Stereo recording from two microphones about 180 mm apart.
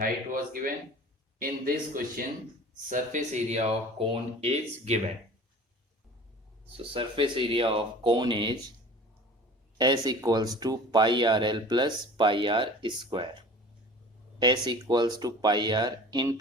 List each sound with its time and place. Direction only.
0.0 s speech: 50° right (ahead or behind)
2.9 s speech: 40° right (ahead or behind)
6.9 s speech: 30° right (ahead or behind)
9.7 s speech: 25° right (ahead or behind)
14.3 s speech: 25° right (ahead or behind)